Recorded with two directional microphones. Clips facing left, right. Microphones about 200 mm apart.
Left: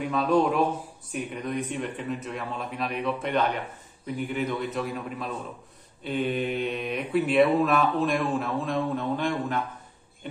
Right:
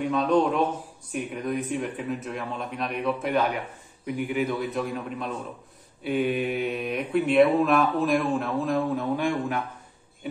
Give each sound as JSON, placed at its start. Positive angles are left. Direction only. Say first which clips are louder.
{"t": 0.1, "sound": "a man's voice", "louder": "even", "side_deg": 10}
{"t": 1.3, "sound": "speech", "louder": "right 3 dB", "side_deg": -5}
{"t": 4.6, "sound": "speech", "louder": "right 1 dB", "side_deg": 0}
{"t": 6.0, "sound": "speech", "louder": "right 2 dB", "side_deg": -10}